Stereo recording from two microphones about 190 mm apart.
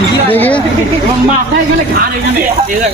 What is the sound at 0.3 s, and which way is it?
Speech, 10° left (ahead or behind).